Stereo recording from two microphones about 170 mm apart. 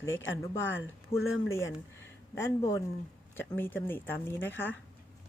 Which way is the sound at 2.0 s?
15° left (ahead or behind).